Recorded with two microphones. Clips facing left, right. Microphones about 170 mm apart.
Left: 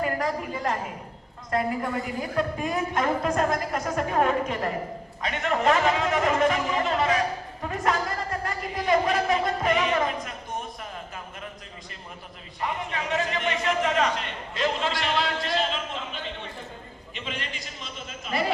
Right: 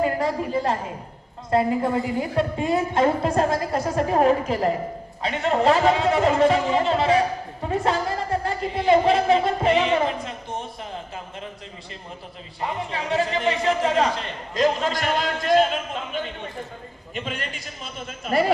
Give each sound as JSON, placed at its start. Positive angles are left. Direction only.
{"t": 0.0, "sound": "a sound", "side_deg": -30}
{"t": 1.5, "sound": "a woman's voice", "side_deg": -30}
{"t": 12.5, "sound": "a man's voice", "side_deg": -30}